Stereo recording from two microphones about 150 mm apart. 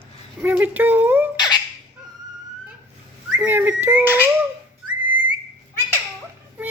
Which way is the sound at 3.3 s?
10° right (ahead or behind).